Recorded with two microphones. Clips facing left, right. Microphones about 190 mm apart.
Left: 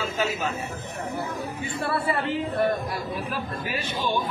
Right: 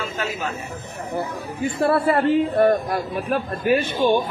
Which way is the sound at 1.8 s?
50° right (ahead or behind).